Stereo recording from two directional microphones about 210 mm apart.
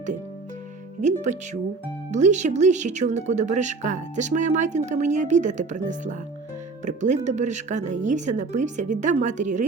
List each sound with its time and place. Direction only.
1.0 s speech: 35° right (ahead or behind)